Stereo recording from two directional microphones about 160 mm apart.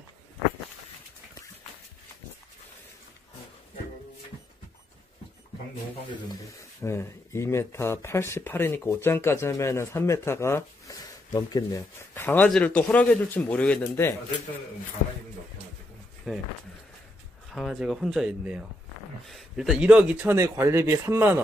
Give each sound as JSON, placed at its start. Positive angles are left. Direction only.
{"t": 6.8, "sound": "speech", "side_deg": 15}
{"t": 16.3, "sound": "speech", "side_deg": 5}
{"t": 17.5, "sound": "speech", "side_deg": 0}
{"t": 20.3, "sound": "speech", "side_deg": -20}